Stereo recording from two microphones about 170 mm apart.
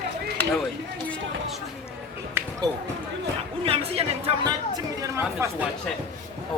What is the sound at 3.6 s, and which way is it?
Speech, 35° right (ahead or behind).